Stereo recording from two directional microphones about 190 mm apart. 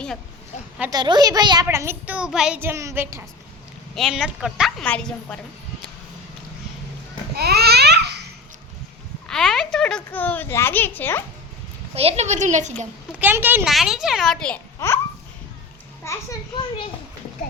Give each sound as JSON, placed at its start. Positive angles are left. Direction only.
{"t": 0.9, "sound": "a woman's voice", "side_deg": -20}
{"t": 3.9, "sound": "a child's voice", "side_deg": 0}
{"t": 7.3, "sound": "babbling", "side_deg": -60}
{"t": 9.2, "sound": "a child's voice", "side_deg": 5}
{"t": 11.9, "sound": "a woman's voice", "side_deg": -35}
{"t": 13.1, "sound": "a child's voice", "side_deg": -10}
{"t": 16.0, "sound": "a child's voice", "side_deg": 20}